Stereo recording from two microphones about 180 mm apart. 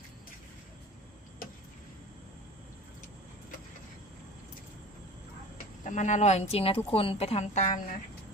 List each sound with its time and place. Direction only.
5.9 s speech: 40° left (ahead or behind)